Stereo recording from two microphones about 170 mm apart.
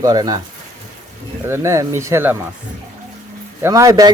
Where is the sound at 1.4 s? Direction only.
15° right (ahead or behind).